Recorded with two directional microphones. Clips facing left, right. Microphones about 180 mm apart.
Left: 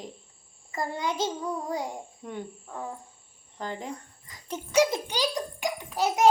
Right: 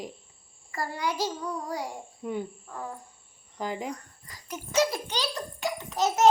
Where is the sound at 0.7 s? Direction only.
20° left (ahead or behind).